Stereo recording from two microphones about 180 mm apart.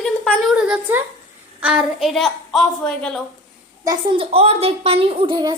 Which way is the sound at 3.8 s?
25° right (ahead or behind).